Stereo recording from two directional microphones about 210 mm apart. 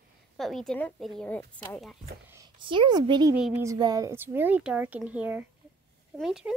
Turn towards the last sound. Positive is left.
turn(degrees=0)  # may be behind; listen again after turning